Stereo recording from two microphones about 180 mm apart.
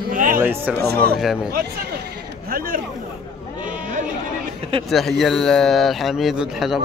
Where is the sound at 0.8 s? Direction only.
60° right (ahead or behind).